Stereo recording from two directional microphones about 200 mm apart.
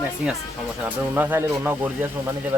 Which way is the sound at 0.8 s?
10° right (ahead or behind).